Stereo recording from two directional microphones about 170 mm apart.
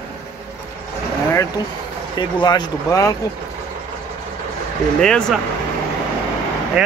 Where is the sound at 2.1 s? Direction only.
25° left (ahead or behind).